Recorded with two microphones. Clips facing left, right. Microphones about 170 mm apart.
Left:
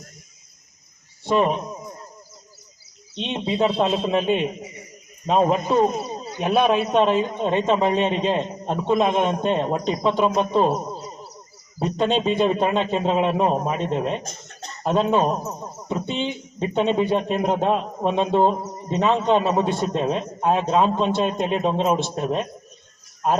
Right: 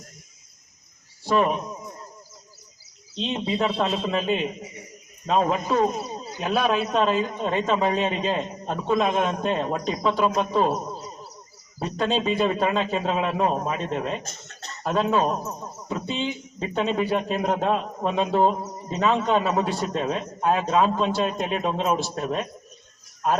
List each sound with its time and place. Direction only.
1.2 s a man's voice: 25° left (ahead or behind)
3.2 s a man's voice: 25° left (ahead or behind)